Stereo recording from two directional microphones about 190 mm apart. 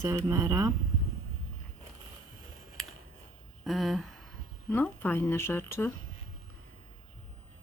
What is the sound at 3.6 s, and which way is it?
Speech, centre (ahead or behind).